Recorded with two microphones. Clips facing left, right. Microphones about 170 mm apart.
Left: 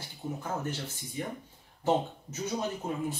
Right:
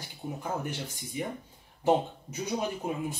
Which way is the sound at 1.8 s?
15° right (ahead or behind).